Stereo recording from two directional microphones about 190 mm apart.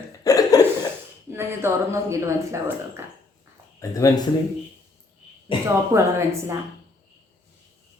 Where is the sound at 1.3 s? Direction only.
15° right (ahead or behind).